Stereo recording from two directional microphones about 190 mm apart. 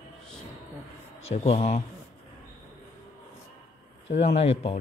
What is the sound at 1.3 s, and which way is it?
Speech, 35° left (ahead or behind).